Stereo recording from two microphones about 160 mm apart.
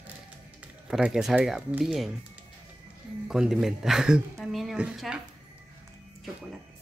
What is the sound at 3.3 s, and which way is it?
A woman's voice, 5° right (ahead or behind).